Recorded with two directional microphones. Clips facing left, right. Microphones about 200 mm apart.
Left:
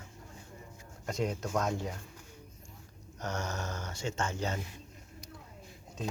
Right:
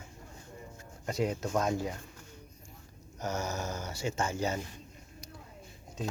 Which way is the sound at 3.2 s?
5° right (ahead or behind).